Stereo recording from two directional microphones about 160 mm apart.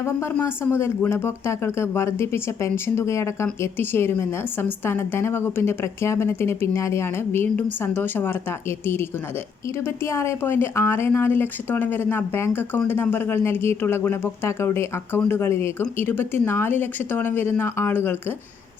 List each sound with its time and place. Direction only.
0.0 s speech: 15° left (ahead or behind)